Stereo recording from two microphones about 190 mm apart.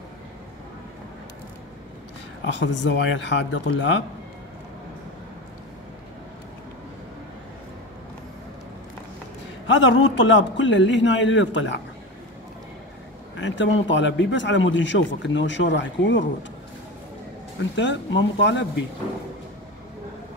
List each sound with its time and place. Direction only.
2.5 s speech: 70° left (ahead or behind)
9.8 s speech: 75° left (ahead or behind)
13.4 s speech: 75° left (ahead or behind)
17.6 s speech: 70° left (ahead or behind)